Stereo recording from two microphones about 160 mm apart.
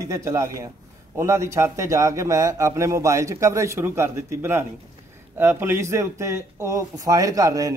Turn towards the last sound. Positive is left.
turn(degrees=-20)  # may be behind; listen again after turning